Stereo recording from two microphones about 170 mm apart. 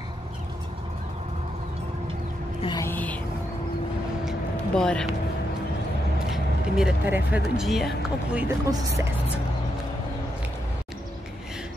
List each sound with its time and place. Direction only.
2.8 s music: 10° left (ahead or behind)
4.3 s vehicle: 5° left (ahead or behind)
6.3 s speech: 5° right (ahead or behind)
8.5 s speech: 20° right (ahead or behind)